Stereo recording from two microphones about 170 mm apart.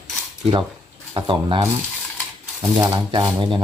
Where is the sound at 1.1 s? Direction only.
30° right (ahead or behind).